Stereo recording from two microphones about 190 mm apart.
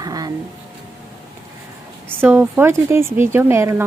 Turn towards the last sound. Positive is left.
turn(degrees=-15)  # may be behind; listen again after turning